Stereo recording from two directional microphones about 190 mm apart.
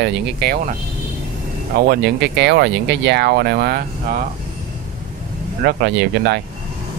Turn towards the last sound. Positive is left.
turn(degrees=-60)  # may be behind; listen again after turning